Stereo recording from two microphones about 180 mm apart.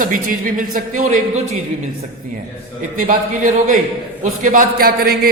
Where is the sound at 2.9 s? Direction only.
50° right (ahead or behind).